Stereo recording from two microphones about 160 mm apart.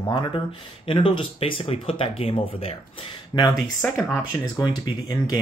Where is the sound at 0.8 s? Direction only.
35° left (ahead or behind).